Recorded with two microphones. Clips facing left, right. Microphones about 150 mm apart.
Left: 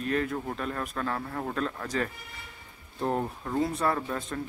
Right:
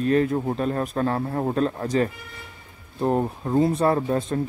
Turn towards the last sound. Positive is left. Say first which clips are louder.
# right 9 dB
turn(degrees=-30)  # may be behind; listen again after turning